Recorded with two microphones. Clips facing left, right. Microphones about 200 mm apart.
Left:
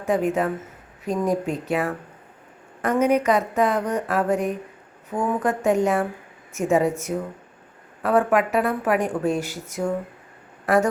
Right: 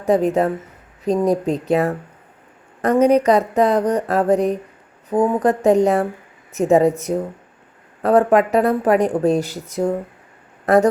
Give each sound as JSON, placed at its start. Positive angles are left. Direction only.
{"t": 0.0, "sound": "speech", "side_deg": -35}